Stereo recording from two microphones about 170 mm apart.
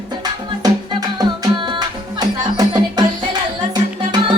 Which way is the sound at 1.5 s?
25° right (ahead or behind).